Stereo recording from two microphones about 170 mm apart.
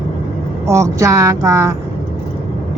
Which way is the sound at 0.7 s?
15° right (ahead or behind).